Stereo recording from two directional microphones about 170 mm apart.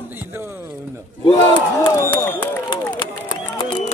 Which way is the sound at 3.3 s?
25° left (ahead or behind).